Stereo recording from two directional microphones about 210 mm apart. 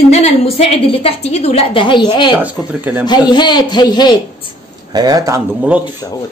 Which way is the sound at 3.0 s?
20° left (ahead or behind).